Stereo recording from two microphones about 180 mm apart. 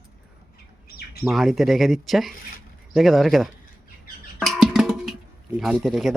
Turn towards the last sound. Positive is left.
turn(degrees=0)  # may be behind; listen again after turning